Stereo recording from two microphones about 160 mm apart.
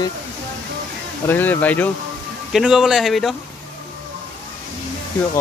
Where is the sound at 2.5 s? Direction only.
5° right (ahead or behind).